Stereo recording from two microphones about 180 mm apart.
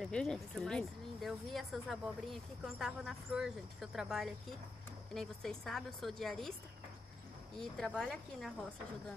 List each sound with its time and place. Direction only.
0.0 s speech: 5° left (ahead or behind)
7.5 s speech: 5° left (ahead or behind)